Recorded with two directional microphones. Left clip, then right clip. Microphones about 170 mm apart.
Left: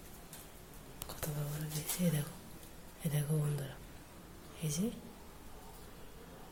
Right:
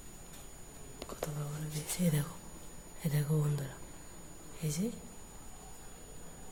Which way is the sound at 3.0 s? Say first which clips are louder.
Right 2 dB; 25° right (ahead or behind).